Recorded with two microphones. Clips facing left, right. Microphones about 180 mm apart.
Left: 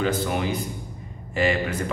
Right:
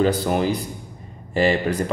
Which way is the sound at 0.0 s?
35° right (ahead or behind).